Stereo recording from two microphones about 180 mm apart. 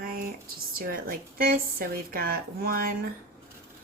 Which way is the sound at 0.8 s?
50° right (ahead or behind).